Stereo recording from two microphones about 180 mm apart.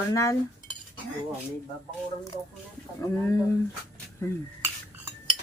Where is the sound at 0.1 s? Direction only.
15° left (ahead or behind).